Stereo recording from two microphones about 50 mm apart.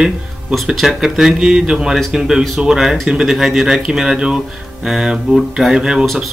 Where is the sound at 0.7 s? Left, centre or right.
Centre.